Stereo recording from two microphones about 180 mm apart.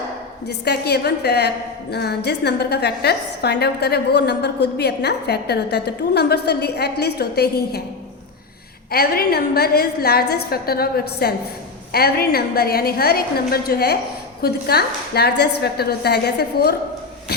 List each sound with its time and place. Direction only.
0.4 s a woman's voice: 65° left (ahead or behind)
8.9 s a woman's voice: 60° left (ahead or behind)